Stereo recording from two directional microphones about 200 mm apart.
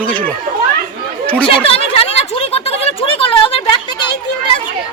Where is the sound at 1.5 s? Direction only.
30° left (ahead or behind).